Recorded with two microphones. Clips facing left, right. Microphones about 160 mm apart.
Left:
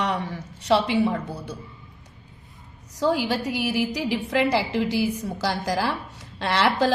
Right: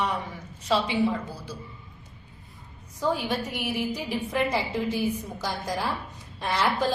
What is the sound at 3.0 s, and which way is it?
A woman's voice, 90° left.